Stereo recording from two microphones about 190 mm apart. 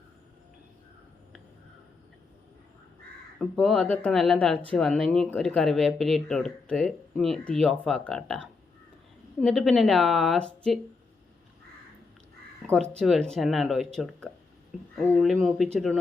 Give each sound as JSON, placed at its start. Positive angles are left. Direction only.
{"t": 3.3, "sound": "speech", "side_deg": 5}
{"t": 12.6, "sound": "speech", "side_deg": 5}